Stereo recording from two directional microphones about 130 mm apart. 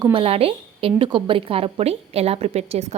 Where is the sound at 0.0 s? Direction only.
45° right (ahead or behind).